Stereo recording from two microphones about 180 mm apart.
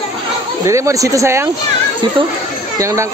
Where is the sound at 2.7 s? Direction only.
15° right (ahead or behind).